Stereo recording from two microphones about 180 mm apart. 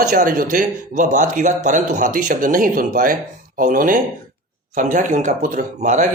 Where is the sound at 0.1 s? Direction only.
50° right (ahead or behind).